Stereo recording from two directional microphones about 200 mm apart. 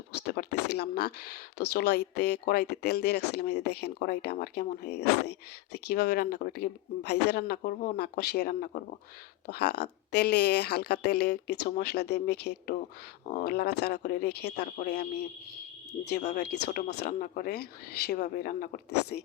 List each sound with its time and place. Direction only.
0.3 s speech: 55° left (ahead or behind)